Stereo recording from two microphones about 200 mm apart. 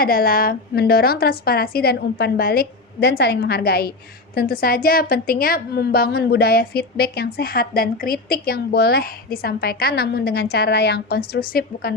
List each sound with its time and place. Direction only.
0.0 s a woman's voice: 50° left (ahead or behind)